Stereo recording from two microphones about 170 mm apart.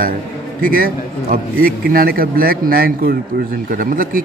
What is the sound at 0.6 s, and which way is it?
Speech, 55° right (ahead or behind).